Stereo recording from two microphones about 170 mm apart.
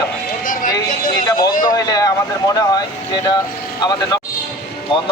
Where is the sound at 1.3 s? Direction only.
25° left (ahead or behind).